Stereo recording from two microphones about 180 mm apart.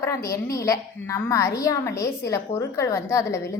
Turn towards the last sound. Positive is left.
turn(degrees=15)  # may be behind; listen again after turning